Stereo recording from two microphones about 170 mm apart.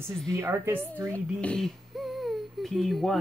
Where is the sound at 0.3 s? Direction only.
15° right (ahead or behind).